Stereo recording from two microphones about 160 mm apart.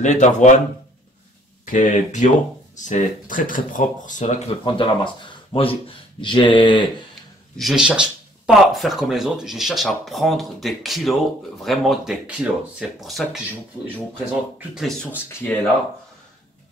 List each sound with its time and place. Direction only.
0.0 s speech: 50° left (ahead or behind)
1.7 s speech: 55° left (ahead or behind)
4.6 s speech: 30° left (ahead or behind)
7.5 s speech: centre (ahead or behind)
14.7 s speech: centre (ahead or behind)